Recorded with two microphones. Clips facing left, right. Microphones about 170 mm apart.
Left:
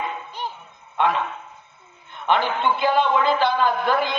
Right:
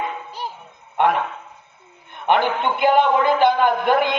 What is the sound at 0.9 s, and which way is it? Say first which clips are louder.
Speech: right 3 dB; 55° right (ahead or behind).